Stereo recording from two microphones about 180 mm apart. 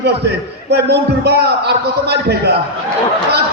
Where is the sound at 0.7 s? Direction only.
65° right (ahead or behind).